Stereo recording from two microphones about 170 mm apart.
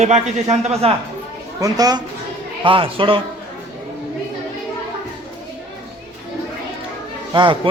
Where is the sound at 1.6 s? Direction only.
20° right (ahead or behind).